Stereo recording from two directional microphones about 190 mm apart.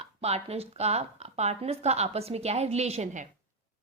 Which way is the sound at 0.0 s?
35° right (ahead or behind).